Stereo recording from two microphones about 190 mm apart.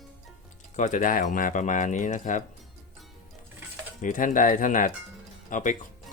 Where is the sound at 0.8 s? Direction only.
40° left (ahead or behind).